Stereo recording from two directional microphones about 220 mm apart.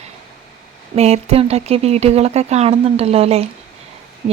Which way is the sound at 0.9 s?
30° right (ahead or behind).